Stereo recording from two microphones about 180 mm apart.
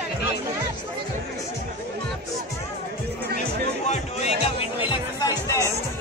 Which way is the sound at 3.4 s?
40° left (ahead or behind).